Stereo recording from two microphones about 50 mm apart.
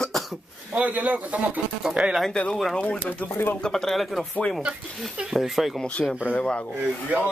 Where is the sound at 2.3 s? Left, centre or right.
Centre.